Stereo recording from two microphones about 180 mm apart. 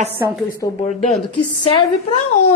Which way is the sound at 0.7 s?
40° left (ahead or behind).